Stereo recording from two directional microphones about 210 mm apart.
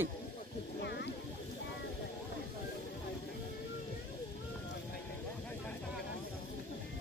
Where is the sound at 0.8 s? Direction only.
55° left (ahead or behind).